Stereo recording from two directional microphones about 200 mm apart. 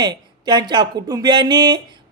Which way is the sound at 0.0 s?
20° right (ahead or behind).